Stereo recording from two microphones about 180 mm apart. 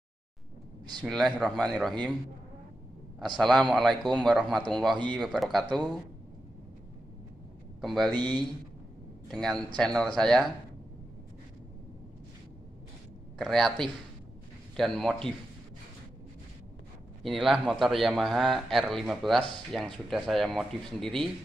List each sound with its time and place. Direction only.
1.0 s a man's voice: centre (ahead or behind)
3.3 s a man's voice: centre (ahead or behind)
7.8 s speech: centre (ahead or behind)
8.1 s speech: 25° right (ahead or behind)
9.3 s a man's voice: centre (ahead or behind)
13.4 s a man's voice: centre (ahead or behind)
17.2 s a man's voice: centre (ahead or behind)